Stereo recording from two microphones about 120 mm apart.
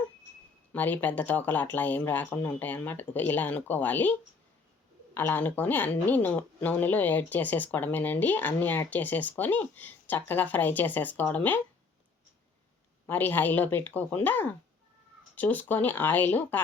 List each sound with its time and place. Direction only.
0.7 s a woman's voice: 15° left (ahead or behind)
5.1 s a woman's voice: 15° left (ahead or behind)
13.1 s a woman's voice: 15° left (ahead or behind)